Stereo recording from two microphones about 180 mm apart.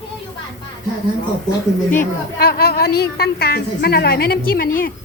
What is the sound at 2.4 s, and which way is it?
A woman's voice, 60° left (ahead or behind).